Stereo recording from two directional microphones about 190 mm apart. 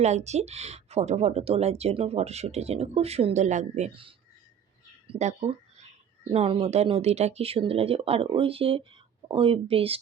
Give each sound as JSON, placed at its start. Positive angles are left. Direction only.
{"t": 0.0, "sound": "speech", "side_deg": -35}